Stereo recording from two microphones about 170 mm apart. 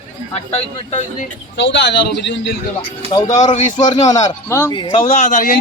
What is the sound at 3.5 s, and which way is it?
Speech, 45° left (ahead or behind).